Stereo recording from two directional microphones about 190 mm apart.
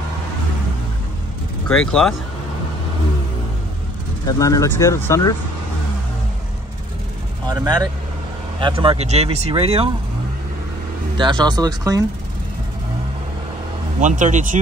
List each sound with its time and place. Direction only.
1.9 s speech: 5° left (ahead or behind)
4.3 s speech: 15° left (ahead or behind)
7.4 s speech: 20° right (ahead or behind)
11.1 s speech: 25° right (ahead or behind)
13.9 s speech: 40° right (ahead or behind)